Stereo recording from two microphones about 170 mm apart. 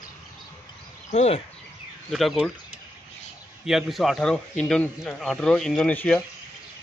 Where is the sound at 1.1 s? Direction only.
40° left (ahead or behind).